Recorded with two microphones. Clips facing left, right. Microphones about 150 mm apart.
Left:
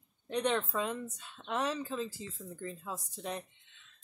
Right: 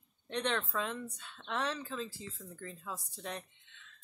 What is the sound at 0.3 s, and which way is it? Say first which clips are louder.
A woman's voice: left 3 dB; 15° left (ahead or behind).